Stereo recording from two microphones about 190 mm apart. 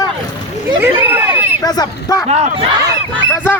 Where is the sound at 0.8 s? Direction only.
10° right (ahead or behind).